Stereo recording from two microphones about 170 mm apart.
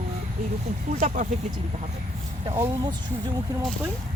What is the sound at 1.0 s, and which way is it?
Speech, 50° right (ahead or behind).